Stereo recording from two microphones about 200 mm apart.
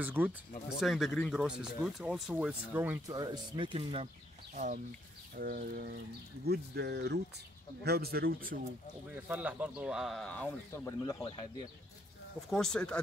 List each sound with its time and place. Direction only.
0.0 s speech: 10° right (ahead or behind)
3.2 s speech: 25° right (ahead or behind)
5.3 s speech: 45° right (ahead or behind)
9.1 s speech: 5° right (ahead or behind); by 11.4 s 20° left (ahead or behind)
12.4 s speech: centre (ahead or behind)